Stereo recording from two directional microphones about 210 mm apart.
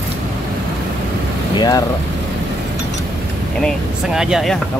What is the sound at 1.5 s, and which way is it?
Vehicle, 20° left (ahead or behind).